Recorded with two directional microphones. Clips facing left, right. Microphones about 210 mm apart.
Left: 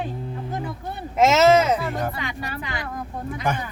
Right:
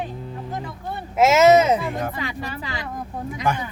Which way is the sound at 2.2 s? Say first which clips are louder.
Right 1 dB; 30° right (ahead or behind).